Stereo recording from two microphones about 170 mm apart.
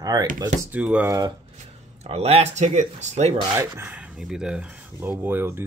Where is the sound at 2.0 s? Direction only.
40° right (ahead or behind).